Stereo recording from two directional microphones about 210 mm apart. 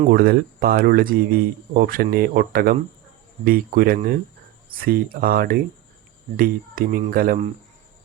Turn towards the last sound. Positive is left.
turn(degrees=-45)  # may be behind; listen again after turning